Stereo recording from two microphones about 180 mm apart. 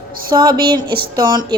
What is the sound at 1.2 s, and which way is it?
Speech, 20° right (ahead or behind).